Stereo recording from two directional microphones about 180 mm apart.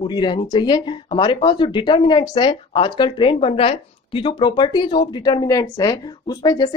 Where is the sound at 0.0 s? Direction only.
25° left (ahead or behind).